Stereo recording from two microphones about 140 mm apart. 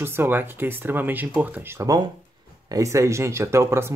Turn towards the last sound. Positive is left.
turn(degrees=-20)  # may be behind; listen again after turning